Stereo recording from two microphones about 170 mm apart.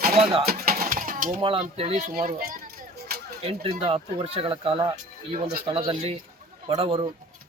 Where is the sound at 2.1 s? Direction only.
55° right (ahead or behind).